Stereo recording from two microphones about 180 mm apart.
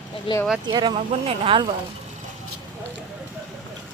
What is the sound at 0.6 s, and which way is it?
Speech, 25° right (ahead or behind).